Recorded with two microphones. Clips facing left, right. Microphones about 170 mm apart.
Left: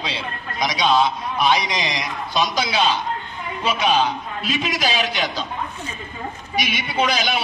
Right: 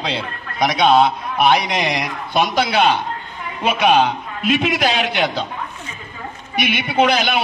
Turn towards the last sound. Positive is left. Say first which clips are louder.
# right 5 dB
turn(degrees=-60)  # may be behind; listen again after turning